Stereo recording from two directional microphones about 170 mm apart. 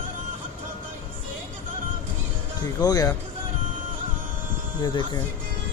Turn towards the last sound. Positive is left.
turn(degrees=25)  # may be behind; listen again after turning